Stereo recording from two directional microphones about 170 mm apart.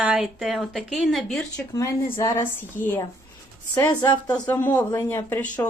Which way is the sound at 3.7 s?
20° left (ahead or behind).